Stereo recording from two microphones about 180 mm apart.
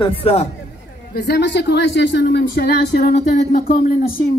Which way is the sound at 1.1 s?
65° left (ahead or behind).